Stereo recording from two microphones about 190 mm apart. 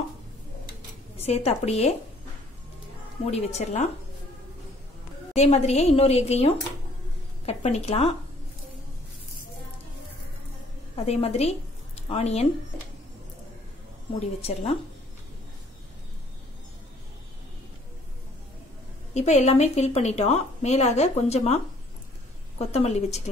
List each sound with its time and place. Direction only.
1.1 s speech: 35° left (ahead or behind)
3.3 s a woman's voice: 35° left (ahead or behind)
5.3 s a woman's voice: 35° left (ahead or behind)
11.1 s a woman's voice: 30° left (ahead or behind)
14.4 s a woman's voice: 35° left (ahead or behind)
19.1 s a woman's voice: 35° left (ahead or behind)
22.6 s a woman's voice: 35° left (ahead or behind)